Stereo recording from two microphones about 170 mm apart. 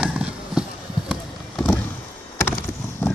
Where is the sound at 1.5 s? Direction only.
10° left (ahead or behind).